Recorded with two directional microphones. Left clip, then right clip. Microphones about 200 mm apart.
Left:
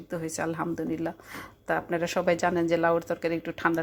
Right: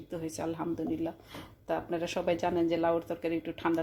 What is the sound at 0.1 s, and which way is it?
Speech, 20° left (ahead or behind).